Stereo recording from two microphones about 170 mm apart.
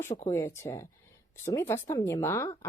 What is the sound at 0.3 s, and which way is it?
Speech, 15° left (ahead or behind).